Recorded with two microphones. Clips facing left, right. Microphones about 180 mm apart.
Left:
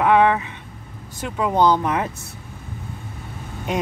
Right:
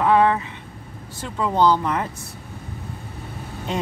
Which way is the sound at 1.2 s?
15° left (ahead or behind).